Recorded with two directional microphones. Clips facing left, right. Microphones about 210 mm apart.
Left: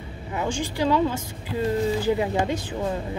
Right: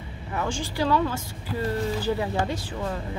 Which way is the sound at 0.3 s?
15° left (ahead or behind).